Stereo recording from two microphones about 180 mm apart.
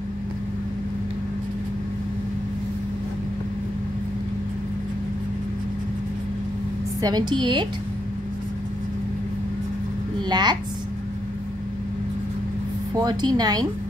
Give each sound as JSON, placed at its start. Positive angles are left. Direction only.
{"t": 7.0, "sound": "a woman's voice", "side_deg": -20}
{"t": 10.2, "sound": "a woman's voice", "side_deg": -25}
{"t": 12.9, "sound": "a woman's voice", "side_deg": -25}